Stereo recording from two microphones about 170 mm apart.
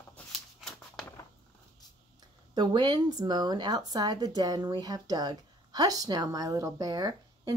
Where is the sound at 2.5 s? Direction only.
25° right (ahead or behind).